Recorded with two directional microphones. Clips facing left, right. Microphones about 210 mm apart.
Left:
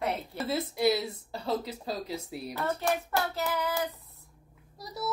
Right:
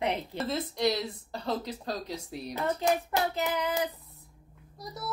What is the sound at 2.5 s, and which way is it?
Child singing, 20° right (ahead or behind).